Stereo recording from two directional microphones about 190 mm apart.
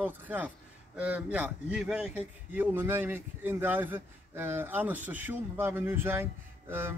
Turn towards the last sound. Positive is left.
turn(degrees=-10)  # may be behind; listen again after turning